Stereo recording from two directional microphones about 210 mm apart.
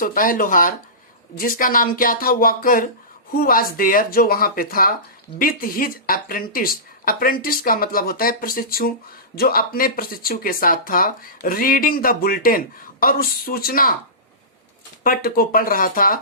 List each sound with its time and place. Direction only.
0.0 s speech: 40° left (ahead or behind)
15.0 s speech: 45° left (ahead or behind)